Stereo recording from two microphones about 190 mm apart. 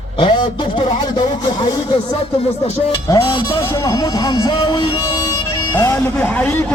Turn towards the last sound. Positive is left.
turn(degrees=5)  # may be behind; listen again after turning